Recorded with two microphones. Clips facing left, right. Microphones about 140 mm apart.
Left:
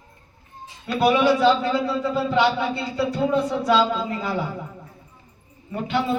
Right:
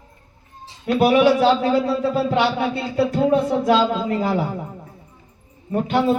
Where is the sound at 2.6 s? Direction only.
55° right (ahead or behind).